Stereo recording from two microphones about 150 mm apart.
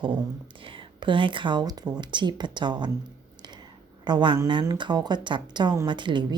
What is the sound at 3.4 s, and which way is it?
Whispering, 30° right (ahead or behind).